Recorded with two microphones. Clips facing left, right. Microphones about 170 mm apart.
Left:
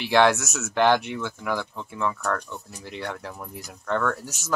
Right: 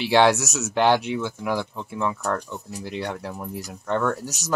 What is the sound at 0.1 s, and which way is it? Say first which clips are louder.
Speech: right 1 dB; 10° right (ahead or behind).